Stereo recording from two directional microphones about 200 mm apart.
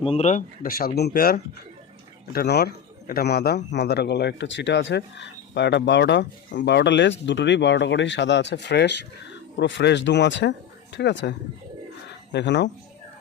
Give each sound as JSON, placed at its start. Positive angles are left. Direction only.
{"t": 0.0, "sound": "a man's voice", "side_deg": 30}